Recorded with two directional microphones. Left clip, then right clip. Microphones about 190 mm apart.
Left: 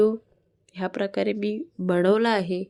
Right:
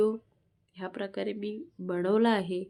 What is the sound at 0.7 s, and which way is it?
Speech, 35° left (ahead or behind).